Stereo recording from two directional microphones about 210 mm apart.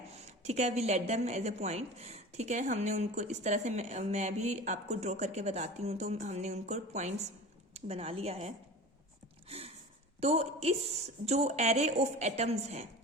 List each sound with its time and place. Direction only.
0.2 s a woman's voice: 30° right (ahead or behind)
9.5 s a sound: 30° right (ahead or behind)
10.2 s a woman's voice: 30° right (ahead or behind)